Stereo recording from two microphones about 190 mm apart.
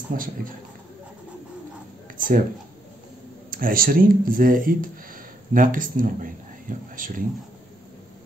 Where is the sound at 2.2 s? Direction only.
45° right (ahead or behind).